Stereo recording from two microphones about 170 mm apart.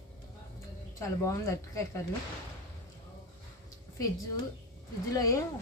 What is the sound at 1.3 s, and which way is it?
Speech, 15° left (ahead or behind).